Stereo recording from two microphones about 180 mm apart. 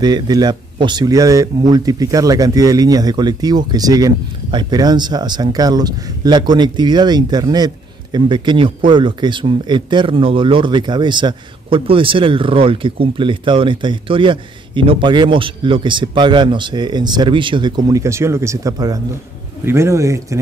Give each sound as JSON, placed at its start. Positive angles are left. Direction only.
{"t": 0.0, "sound": "speech", "side_deg": -20}